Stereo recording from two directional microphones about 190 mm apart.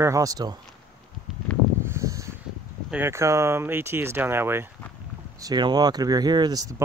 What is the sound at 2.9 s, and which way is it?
Speech, 10° right (ahead or behind).